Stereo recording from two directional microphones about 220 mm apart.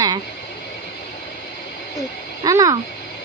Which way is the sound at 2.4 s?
15° right (ahead or behind).